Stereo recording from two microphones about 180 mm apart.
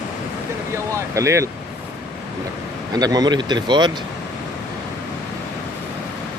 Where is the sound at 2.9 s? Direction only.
20° right (ahead or behind).